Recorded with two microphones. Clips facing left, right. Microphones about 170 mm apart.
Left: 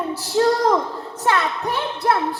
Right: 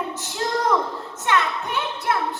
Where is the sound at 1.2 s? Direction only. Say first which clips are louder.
Left 2 dB; 35° left (ahead or behind).